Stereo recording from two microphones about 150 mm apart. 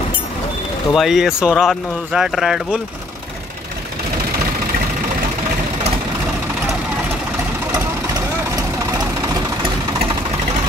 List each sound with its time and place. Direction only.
0.9 s speech: centre (ahead or behind)
7.7 s vehicle: 25° right (ahead or behind)